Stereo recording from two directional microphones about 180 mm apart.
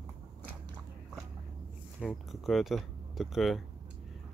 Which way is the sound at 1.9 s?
Centre (ahead or behind).